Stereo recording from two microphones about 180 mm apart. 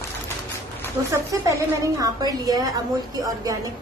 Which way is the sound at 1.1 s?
20° right (ahead or behind).